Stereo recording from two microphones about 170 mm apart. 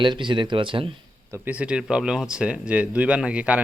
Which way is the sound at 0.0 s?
30° right (ahead or behind).